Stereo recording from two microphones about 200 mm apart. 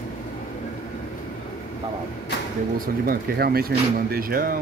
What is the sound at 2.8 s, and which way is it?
Speech, 50° right (ahead or behind).